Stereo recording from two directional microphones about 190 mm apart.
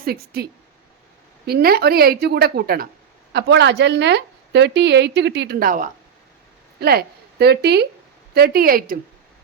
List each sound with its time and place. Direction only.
0.0 s a woman's voice: 55° right (ahead or behind)
1.5 s a woman's voice: 55° right (ahead or behind)
3.3 s a woman's voice: 65° right (ahead or behind); by 5.9 s 45° right (ahead or behind)
6.7 s a woman's voice: 55° right (ahead or behind)